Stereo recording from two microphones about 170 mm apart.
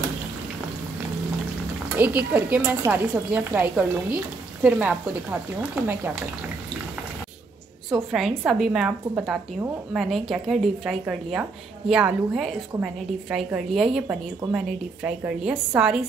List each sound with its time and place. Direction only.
2.0 s speech: 10° right (ahead or behind)
7.9 s a woman's voice: centre (ahead or behind)